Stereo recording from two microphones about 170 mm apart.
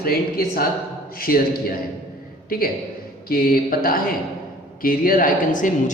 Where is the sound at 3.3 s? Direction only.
60° left (ahead or behind).